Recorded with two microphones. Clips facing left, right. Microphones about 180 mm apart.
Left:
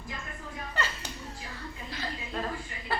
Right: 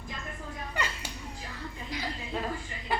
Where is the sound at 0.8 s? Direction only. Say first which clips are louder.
Left 1 dB; 15° right (ahead or behind).